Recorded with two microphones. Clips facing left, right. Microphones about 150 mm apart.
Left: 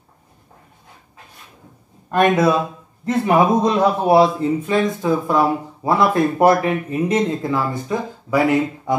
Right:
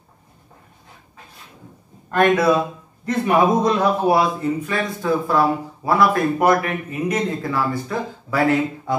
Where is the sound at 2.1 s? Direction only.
15° left (ahead or behind).